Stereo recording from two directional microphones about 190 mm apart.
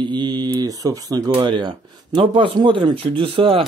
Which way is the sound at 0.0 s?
25° right (ahead or behind).